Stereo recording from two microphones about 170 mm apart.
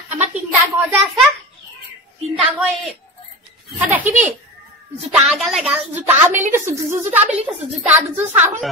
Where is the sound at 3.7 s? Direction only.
10° right (ahead or behind).